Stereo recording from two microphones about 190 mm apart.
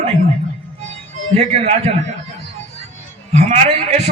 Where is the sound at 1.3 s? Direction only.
35° right (ahead or behind).